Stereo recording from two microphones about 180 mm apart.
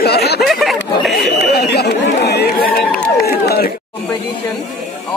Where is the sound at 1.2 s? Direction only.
65° left (ahead or behind).